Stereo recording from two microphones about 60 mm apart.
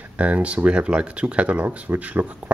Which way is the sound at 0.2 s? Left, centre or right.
Right.